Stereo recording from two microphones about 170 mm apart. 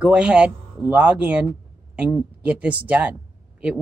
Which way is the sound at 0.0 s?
5° right (ahead or behind).